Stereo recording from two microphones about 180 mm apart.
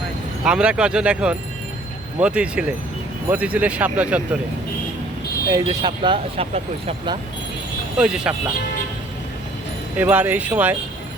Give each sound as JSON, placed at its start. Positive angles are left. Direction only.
{"t": 0.4, "sound": "a man's voice", "side_deg": -5}
{"t": 5.5, "sound": "speech", "side_deg": -20}
{"t": 7.9, "sound": "speech", "side_deg": -5}
{"t": 10.0, "sound": "a man's voice", "side_deg": -10}